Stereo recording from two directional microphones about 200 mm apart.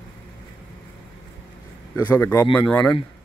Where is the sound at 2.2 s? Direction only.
15° left (ahead or behind).